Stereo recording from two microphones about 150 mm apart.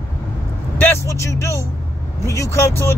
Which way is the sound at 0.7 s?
15° left (ahead or behind).